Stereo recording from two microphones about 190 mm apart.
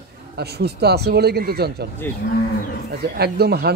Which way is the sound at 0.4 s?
60° right (ahead or behind).